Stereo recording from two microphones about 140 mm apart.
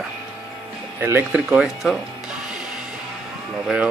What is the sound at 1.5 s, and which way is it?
Speech, centre (ahead or behind).